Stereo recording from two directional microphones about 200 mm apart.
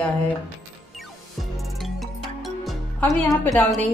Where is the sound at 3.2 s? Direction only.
5° left (ahead or behind).